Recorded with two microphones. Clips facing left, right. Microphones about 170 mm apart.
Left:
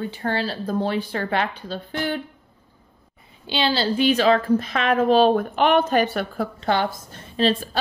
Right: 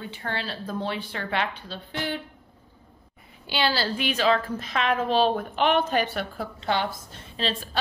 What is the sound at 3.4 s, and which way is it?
Speech, 20° left (ahead or behind).